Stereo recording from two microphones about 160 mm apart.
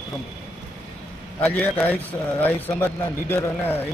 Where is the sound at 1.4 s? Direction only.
10° left (ahead or behind).